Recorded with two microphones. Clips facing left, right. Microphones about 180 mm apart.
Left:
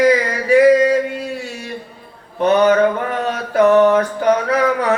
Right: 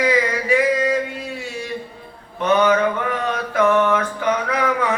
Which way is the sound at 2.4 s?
40° left (ahead or behind).